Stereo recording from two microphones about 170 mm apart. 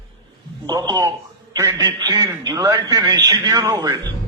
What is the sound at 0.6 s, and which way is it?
A man's voice, 15° right (ahead or behind).